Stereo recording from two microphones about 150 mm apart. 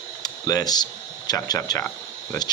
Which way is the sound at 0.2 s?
25° left (ahead or behind).